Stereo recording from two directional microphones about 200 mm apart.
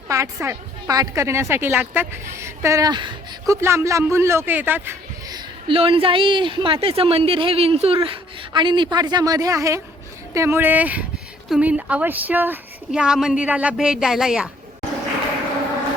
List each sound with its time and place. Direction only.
0.1 s a woman's voice: 15° right (ahead or behind)
5.6 s a woman's voice: 25° right (ahead or behind); by 14.5 s centre (ahead or behind)